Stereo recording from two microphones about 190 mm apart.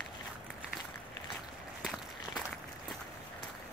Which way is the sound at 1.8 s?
Centre (ahead or behind).